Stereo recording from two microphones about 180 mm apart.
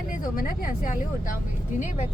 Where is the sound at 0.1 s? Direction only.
50° left (ahead or behind).